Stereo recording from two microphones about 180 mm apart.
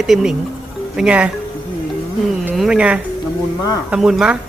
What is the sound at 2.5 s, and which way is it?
Speech, 5° right (ahead or behind).